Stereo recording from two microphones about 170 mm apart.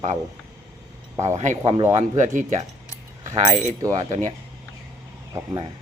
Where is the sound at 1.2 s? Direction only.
40° right (ahead or behind).